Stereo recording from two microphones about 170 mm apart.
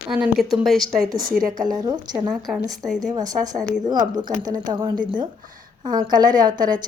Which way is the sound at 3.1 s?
20° right (ahead or behind).